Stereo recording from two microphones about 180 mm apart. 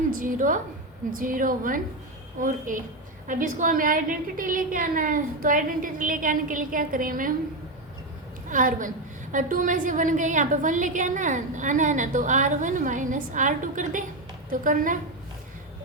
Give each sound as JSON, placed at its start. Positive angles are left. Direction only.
{"t": 0.1, "sound": "a woman's voice", "side_deg": -50}
{"t": 8.4, "sound": "a woman's voice", "side_deg": -45}